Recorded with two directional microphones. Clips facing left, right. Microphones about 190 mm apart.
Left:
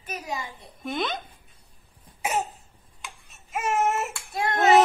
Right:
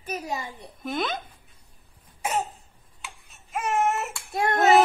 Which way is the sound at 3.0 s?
Centre (ahead or behind).